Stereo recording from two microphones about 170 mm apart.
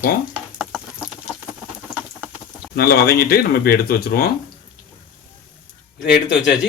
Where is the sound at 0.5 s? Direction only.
5° right (ahead or behind).